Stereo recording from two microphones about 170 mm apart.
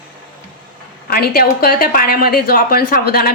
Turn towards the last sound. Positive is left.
turn(degrees=60)  # may be behind; listen again after turning